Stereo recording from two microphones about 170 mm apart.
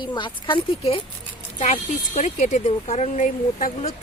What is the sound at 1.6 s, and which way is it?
Speech, 45° left (ahead or behind).